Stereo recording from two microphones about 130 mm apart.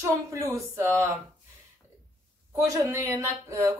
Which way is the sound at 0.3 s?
20° right (ahead or behind).